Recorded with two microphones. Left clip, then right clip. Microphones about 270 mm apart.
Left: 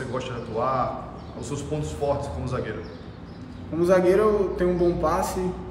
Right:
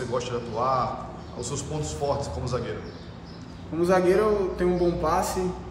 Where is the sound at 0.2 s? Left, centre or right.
Centre.